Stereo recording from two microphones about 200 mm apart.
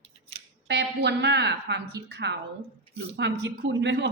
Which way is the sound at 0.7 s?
55° right (ahead or behind).